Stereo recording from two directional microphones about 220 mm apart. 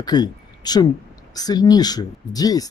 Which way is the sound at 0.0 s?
20° left (ahead or behind).